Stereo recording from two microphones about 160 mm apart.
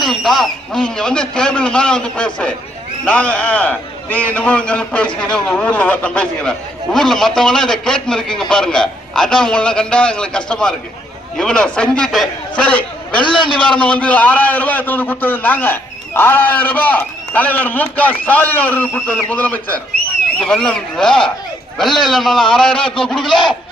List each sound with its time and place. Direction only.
0.0 s a man's voice: centre (ahead or behind)
13.2 s a man's voice: 30° left (ahead or behind)
13.7 s a man's voice: 5° left (ahead or behind)